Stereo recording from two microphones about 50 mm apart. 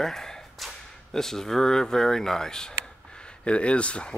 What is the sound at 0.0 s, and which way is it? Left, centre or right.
Whip, centre.